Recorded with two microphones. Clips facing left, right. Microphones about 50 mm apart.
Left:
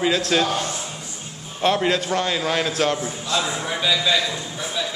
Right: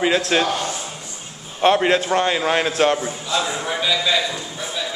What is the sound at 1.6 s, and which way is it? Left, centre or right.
A man's voice, right.